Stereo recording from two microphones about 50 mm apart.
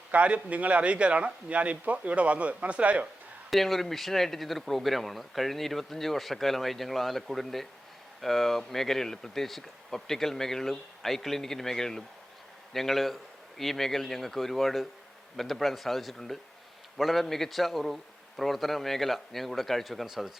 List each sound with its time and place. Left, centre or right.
0.1 s a man's voice: right
3.5 s speech: centre